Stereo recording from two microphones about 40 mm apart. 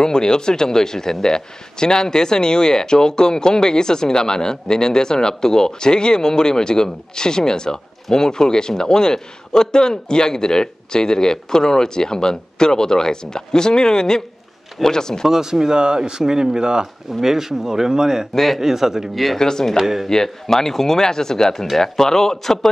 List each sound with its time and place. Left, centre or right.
0.0 s speech: centre
15.2 s speech: centre
18.3 s a man's voice: centre
18.6 s speech: centre
19.3 s speech: centre
19.8 s speech: centre
20.1 s speech: centre